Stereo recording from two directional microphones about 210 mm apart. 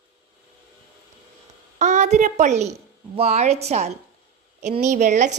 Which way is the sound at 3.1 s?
30° right (ahead or behind).